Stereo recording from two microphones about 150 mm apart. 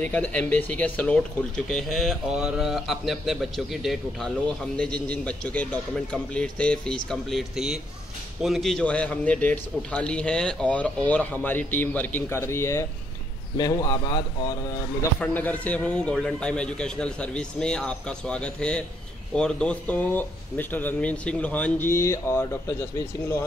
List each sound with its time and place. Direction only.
0.1 s a man's voice: 10° left (ahead or behind)
15.1 s a man's voice: 10° left (ahead or behind)